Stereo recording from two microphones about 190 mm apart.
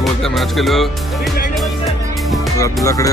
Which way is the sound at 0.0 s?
Centre (ahead or behind).